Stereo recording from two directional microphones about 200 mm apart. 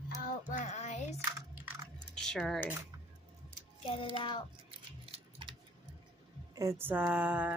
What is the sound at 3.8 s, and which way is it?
Child singing, 25° left (ahead or behind).